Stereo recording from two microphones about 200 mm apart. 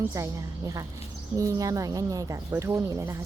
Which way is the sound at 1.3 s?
15° right (ahead or behind).